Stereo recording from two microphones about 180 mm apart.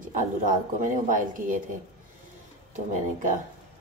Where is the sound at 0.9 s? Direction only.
45° right (ahead or behind).